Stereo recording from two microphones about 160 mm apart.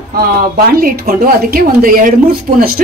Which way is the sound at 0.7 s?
65° right (ahead or behind).